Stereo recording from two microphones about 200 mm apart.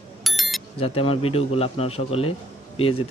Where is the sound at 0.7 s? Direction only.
30° left (ahead or behind).